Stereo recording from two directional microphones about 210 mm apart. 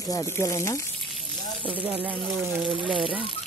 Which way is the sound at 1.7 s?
10° right (ahead or behind).